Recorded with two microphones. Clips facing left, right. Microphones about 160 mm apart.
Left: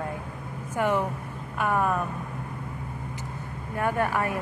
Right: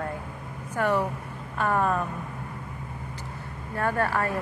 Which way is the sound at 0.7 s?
15° left (ahead or behind).